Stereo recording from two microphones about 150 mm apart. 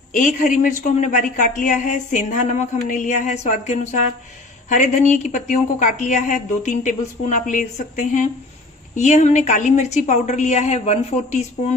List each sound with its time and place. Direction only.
0.1 s a woman's voice: 55° left (ahead or behind)